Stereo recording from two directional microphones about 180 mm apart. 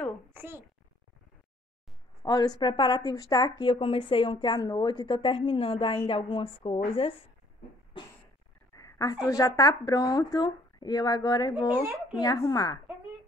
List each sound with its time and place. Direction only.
0.3 s a child's voice: 10° right (ahead or behind)
2.2 s speech: 20° left (ahead or behind)
8.0 s cough: 25° left (ahead or behind)
8.7 s speech: 20° left (ahead or behind)